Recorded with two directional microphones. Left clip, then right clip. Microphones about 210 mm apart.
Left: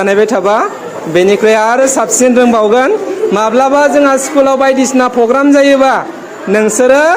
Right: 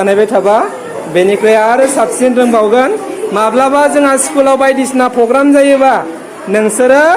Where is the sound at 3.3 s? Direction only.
20° left (ahead or behind).